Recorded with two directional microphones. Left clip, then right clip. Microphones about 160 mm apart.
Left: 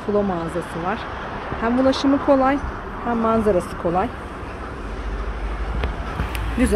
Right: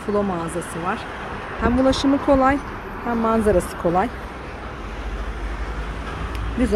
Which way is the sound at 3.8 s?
40° right (ahead or behind).